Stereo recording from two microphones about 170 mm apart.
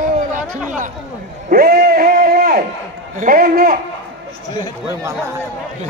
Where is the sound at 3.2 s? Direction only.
55° right (ahead or behind).